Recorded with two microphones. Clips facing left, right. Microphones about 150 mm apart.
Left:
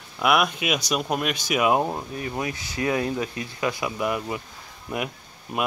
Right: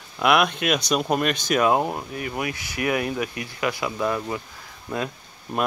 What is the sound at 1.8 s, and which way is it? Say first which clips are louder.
Speech: even; 10° right (ahead or behind).